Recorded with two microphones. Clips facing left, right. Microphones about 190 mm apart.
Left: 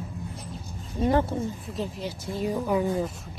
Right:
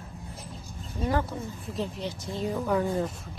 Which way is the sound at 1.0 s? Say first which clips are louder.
Left 5 dB; 25° left (ahead or behind).